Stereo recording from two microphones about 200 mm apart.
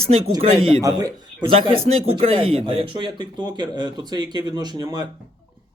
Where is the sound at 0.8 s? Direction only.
20° right (ahead or behind).